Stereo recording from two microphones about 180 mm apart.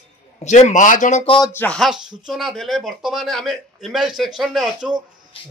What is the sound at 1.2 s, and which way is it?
Speech, 25° left (ahead or behind).